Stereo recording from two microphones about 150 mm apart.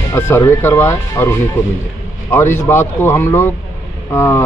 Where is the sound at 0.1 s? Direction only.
15° left (ahead or behind).